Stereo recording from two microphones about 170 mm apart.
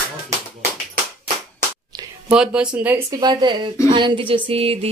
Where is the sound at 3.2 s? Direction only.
25° right (ahead or behind).